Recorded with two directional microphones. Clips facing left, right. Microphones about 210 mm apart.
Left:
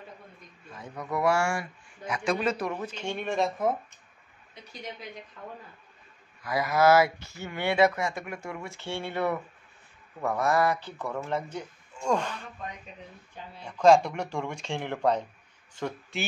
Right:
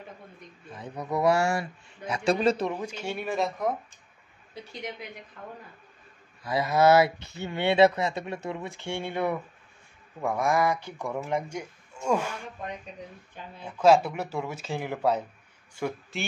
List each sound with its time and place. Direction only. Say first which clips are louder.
0.7 s a man's voice: right 2 dB; 20° right (ahead or behind)
2.7 s speech: right 1 dB; 10° right (ahead or behind)
6.4 s speech: right 1 dB; 25° right (ahead or behind); by 12.4 s 5° right (ahead or behind)
13.7 s speech: even; 5° right (ahead or behind)